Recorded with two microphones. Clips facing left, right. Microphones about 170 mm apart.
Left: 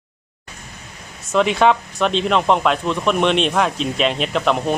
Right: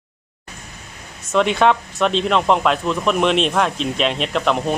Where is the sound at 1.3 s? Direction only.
Centre (ahead or behind).